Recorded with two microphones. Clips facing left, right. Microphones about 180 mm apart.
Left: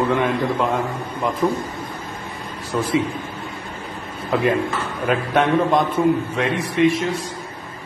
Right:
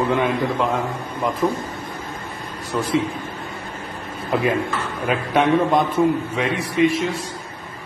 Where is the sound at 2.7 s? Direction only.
Centre (ahead or behind).